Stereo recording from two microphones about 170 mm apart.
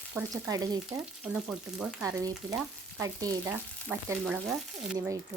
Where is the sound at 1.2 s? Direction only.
5° right (ahead or behind).